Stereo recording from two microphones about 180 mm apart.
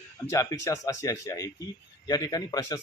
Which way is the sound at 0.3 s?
20° left (ahead or behind).